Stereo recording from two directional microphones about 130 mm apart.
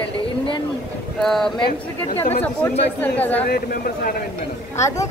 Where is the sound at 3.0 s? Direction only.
15° left (ahead or behind).